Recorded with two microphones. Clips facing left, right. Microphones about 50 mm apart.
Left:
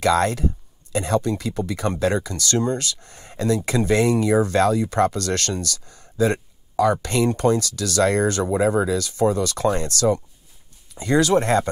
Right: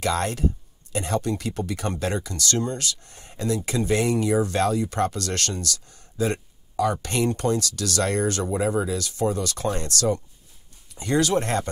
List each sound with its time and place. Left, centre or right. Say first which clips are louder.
0.0 s speech: left 5 dB; left